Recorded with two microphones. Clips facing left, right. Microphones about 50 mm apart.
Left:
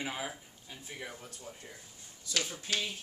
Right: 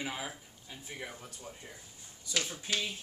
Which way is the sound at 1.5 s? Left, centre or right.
Centre.